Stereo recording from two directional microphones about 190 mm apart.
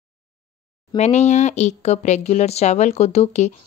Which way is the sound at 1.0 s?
35° left (ahead or behind).